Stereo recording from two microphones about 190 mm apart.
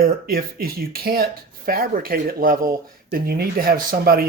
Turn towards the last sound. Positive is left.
turn(degrees=-50)  # may be behind; listen again after turning